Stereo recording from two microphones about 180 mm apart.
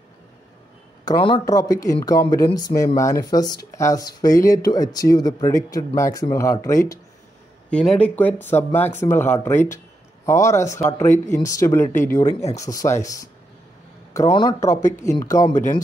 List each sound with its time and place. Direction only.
1.0 s speech: 25° left (ahead or behind)
7.7 s speech: 5° left (ahead or behind)